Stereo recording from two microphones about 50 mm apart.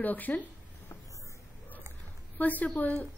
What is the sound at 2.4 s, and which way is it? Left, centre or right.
Speech, left.